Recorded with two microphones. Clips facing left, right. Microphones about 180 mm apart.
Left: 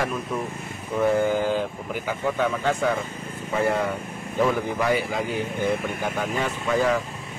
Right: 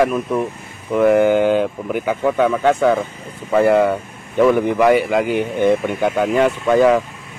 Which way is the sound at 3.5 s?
75° right (ahead or behind).